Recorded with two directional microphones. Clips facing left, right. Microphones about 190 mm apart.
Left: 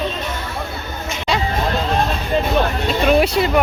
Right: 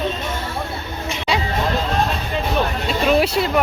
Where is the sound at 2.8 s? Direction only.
Centre (ahead or behind).